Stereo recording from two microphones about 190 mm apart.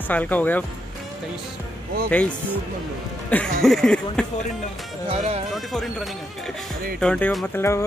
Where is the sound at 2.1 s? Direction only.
5° left (ahead or behind).